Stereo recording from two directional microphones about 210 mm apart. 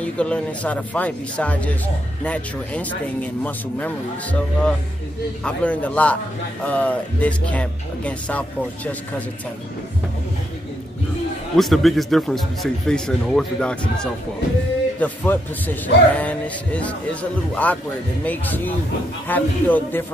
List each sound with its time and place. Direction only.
0.0 s a man's voice: 5° left (ahead or behind)
11.5 s a man's voice: centre (ahead or behind)